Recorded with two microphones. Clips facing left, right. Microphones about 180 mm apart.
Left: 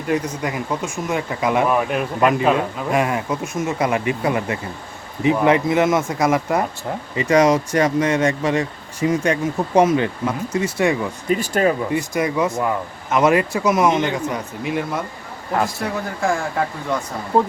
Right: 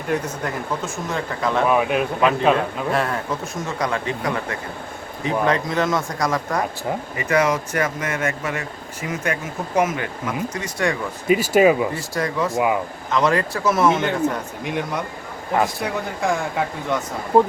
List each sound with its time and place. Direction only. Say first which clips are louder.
1.1 s speech: left 3 dB; 15° left (ahead or behind)
1.6 s speech: right 1 dB; 5° right (ahead or behind); by 10.9 s 25° left (ahead or behind)
11.5 s speech: right 4 dB; 10° right (ahead or behind)
11.9 s speech: left 4 dB; 20° left (ahead or behind)
12.5 s speech: right 2 dB; 5° right (ahead or behind)
13.1 s speech: left 4 dB; 20° left (ahead or behind)
14.6 s speech: left 2 dB; 5° left (ahead or behind)